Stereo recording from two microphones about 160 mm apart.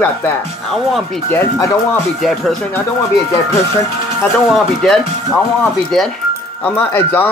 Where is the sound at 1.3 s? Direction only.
15° left (ahead or behind).